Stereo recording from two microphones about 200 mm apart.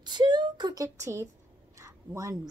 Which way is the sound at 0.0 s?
20° right (ahead or behind).